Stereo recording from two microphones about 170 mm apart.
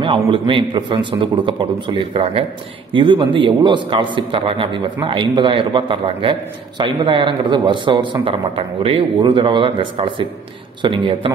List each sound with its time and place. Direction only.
0.0 s speech: 30° right (ahead or behind)